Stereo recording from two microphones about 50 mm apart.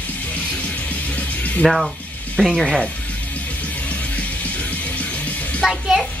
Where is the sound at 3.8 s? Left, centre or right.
Left.